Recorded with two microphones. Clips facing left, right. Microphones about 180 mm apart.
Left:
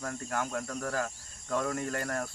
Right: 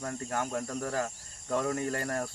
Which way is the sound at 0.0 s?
20° right (ahead or behind).